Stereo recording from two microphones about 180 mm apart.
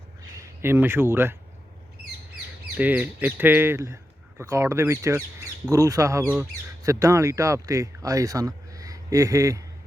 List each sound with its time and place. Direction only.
0.6 s speech: 15° right (ahead or behind)
2.7 s speech: 10° right (ahead or behind)